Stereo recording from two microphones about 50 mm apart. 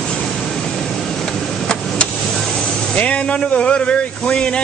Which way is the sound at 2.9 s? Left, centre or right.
Left.